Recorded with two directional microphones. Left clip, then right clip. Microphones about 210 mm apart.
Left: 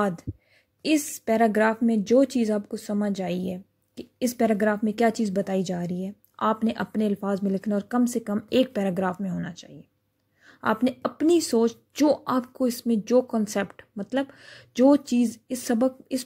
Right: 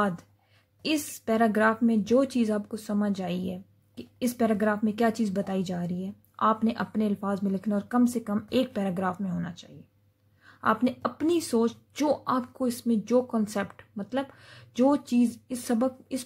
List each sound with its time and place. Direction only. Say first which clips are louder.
0.0 s speech: left 2 dB; 25° left (ahead or behind)